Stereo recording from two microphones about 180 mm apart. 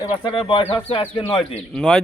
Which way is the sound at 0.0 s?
25° left (ahead or behind).